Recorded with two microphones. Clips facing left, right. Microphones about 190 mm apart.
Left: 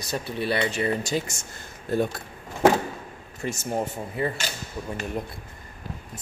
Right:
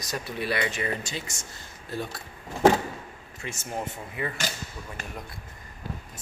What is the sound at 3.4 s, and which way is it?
Speech, 40° left (ahead or behind).